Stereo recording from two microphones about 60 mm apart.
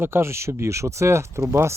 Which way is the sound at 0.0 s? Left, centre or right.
Right.